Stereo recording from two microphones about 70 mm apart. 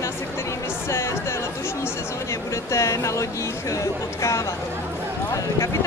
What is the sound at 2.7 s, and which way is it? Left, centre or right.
Speech, left.